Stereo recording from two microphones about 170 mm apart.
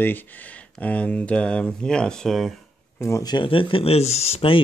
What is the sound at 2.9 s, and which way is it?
Speech, 15° left (ahead or behind).